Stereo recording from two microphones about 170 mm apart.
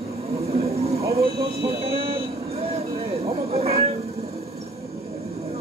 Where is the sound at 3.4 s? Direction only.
40° right (ahead or behind).